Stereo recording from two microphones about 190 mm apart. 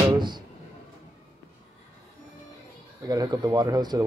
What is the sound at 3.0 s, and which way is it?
Speech, 20° right (ahead or behind).